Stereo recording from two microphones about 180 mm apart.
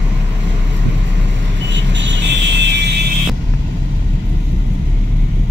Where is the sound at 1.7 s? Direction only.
80° right.